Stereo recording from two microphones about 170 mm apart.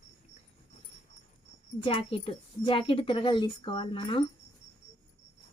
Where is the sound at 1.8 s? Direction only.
30° left (ahead or behind).